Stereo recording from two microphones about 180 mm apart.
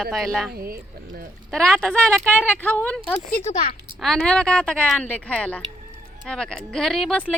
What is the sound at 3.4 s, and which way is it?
Speech, 40° left (ahead or behind).